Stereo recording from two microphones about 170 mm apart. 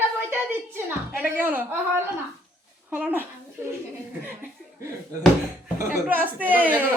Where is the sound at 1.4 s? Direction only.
10° right (ahead or behind).